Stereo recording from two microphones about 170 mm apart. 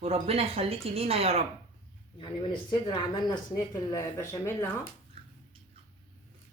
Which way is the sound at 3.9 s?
15° left (ahead or behind).